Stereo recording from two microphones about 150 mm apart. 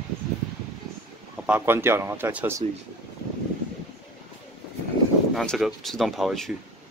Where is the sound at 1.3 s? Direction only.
10° right (ahead or behind).